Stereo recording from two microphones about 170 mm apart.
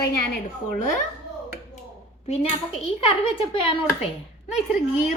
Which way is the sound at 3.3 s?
30° left (ahead or behind).